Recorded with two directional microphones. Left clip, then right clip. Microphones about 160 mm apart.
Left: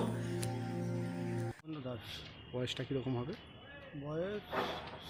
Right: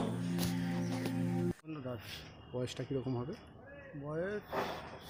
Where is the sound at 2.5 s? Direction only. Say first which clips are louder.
Even; 10° right (ahead or behind).